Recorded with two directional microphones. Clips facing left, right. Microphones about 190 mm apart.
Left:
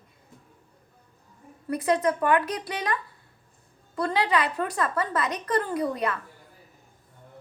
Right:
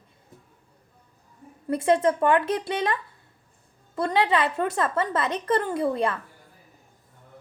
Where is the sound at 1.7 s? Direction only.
25° right (ahead or behind).